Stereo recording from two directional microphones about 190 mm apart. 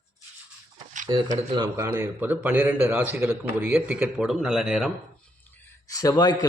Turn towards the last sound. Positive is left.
turn(degrees=20)  # may be behind; listen again after turning